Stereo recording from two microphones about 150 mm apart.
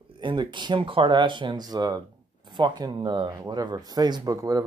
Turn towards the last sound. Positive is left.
turn(degrees=-25)  # may be behind; listen again after turning